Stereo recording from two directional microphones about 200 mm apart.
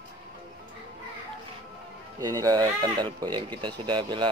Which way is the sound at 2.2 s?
20° right (ahead or behind).